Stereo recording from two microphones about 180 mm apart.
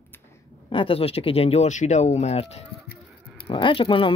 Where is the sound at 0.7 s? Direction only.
30° left (ahead or behind).